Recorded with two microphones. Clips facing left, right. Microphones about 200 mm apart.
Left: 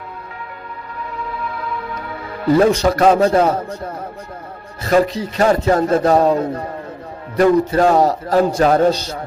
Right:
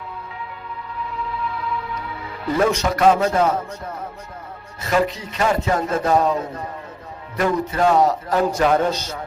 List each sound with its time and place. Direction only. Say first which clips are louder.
1.5 s music: left 1 dB; 50° left (ahead or behind)
2.8 s a man's voice: left 4 dB; 35° left (ahead or behind)